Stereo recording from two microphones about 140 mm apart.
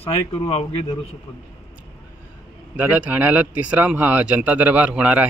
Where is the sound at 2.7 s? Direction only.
10° right (ahead or behind).